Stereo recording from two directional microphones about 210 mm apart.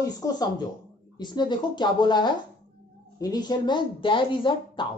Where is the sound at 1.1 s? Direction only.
20° left (ahead or behind).